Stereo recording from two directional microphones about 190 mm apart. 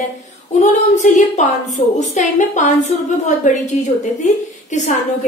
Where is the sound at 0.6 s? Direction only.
40° left (ahead or behind).